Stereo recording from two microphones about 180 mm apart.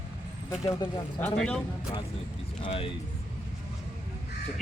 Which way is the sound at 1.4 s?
5° left (ahead or behind).